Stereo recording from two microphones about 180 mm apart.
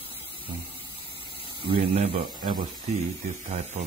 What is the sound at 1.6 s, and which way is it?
Speech, 30° right (ahead or behind).